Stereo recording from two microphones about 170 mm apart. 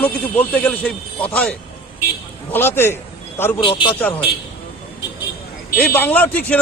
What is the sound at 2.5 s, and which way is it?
Speech, 15° left (ahead or behind).